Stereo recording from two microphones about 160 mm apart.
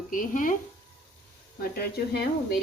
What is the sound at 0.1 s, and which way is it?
Speech, 55° left (ahead or behind).